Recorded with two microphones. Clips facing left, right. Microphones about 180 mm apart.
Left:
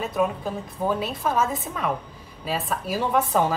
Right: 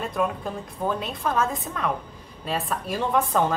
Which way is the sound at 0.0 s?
5° left (ahead or behind).